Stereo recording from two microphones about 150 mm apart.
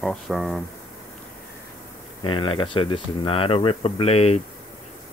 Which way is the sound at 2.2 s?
35° left (ahead or behind).